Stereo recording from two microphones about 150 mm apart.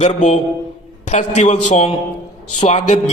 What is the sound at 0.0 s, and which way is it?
A man's voice, 50° left (ahead or behind).